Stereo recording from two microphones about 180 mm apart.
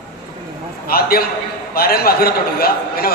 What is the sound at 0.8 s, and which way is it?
A man's voice, 55° left (ahead or behind).